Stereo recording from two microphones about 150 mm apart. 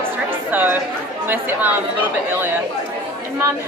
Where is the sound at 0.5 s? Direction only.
10° right (ahead or behind).